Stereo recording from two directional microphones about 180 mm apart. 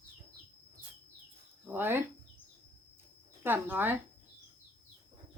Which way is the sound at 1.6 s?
10° right (ahead or behind).